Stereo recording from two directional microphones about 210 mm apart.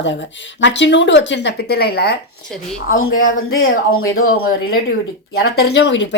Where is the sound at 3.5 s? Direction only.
80° left.